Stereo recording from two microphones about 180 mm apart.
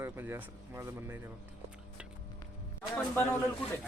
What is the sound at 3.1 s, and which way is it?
Speech, 15° left (ahead or behind).